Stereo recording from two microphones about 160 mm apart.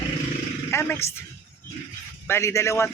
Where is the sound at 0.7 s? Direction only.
15° left (ahead or behind).